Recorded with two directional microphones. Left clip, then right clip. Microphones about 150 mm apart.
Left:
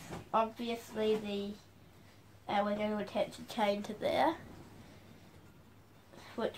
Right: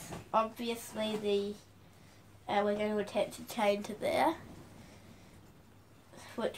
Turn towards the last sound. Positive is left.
turn(degrees=10)  # may be behind; listen again after turning